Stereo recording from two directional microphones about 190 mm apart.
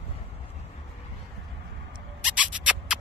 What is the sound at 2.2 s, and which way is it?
Rodents, 5° right (ahead or behind).